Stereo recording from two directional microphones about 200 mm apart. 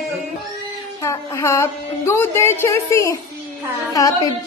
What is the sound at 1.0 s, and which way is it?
Speech, 15° left (ahead or behind).